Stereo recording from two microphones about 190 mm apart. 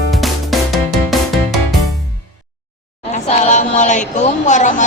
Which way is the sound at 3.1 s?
40° left (ahead or behind).